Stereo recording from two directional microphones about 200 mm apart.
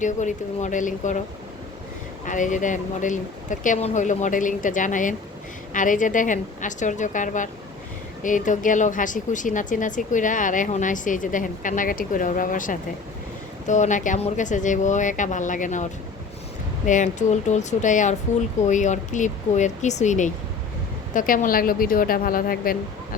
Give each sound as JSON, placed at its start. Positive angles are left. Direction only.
{"t": 0.0, "sound": "speech", "side_deg": 40}
{"t": 2.2, "sound": "a woman's voice", "side_deg": 40}